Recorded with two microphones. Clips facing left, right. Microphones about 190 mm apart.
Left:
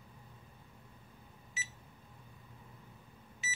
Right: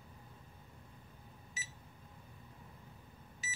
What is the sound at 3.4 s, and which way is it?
Vehicle, 40° right (ahead or behind).